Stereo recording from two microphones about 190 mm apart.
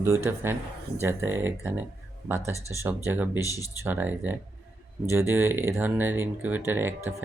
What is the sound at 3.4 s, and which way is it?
Speech, 20° left (ahead or behind).